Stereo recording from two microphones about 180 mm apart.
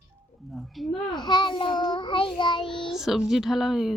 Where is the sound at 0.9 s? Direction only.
25° left (ahead or behind).